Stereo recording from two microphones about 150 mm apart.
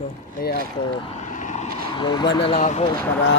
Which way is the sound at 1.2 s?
55° left (ahead or behind).